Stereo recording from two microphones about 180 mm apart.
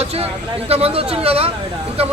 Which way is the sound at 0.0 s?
35° right (ahead or behind).